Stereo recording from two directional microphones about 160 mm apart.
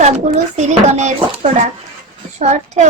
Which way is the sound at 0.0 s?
45° right (ahead or behind).